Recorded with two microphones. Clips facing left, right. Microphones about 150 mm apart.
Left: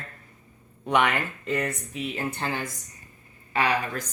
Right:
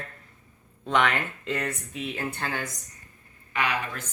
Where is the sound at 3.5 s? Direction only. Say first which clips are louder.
Left 4 dB; 35° left (ahead or behind).